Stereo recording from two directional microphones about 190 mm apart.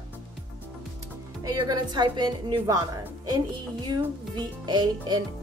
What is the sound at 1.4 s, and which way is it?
A woman's voice, 20° right (ahead or behind).